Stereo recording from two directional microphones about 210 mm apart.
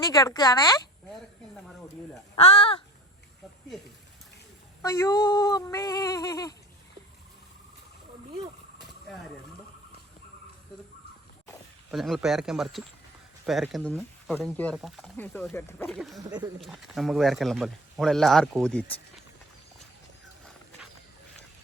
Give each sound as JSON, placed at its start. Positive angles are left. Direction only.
{"t": 0.1, "sound": "speech", "side_deg": 15}
{"t": 2.3, "sound": "speech", "side_deg": 25}
{"t": 4.8, "sound": "a sound", "side_deg": 15}
{"t": 11.9, "sound": "speech", "side_deg": 0}
{"t": 16.0, "sound": "speech", "side_deg": 0}
{"t": 16.2, "sound": "speech", "side_deg": -15}
{"t": 16.6, "sound": "speech", "side_deg": 0}